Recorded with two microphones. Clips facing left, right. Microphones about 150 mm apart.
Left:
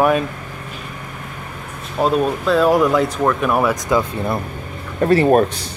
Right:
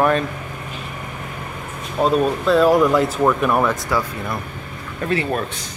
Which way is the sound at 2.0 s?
Centre (ahead or behind).